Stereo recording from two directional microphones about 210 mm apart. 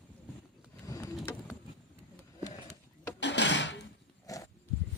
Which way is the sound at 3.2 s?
55° left (ahead or behind).